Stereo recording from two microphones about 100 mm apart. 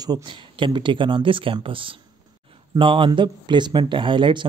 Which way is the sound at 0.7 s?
55° right (ahead or behind).